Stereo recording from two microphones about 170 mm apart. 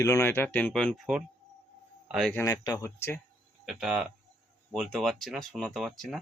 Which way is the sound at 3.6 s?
Centre (ahead or behind).